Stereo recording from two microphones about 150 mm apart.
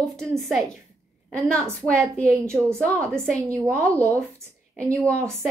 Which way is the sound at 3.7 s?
20° right (ahead or behind).